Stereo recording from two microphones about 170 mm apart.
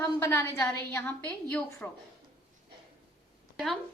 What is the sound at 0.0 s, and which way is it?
A woman's voice, 15° left (ahead or behind).